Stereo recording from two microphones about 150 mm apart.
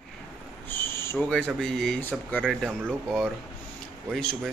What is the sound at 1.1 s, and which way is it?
Speech, 5° left (ahead or behind).